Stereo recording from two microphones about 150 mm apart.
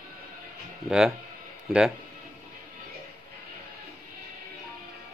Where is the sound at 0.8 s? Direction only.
5° right (ahead or behind).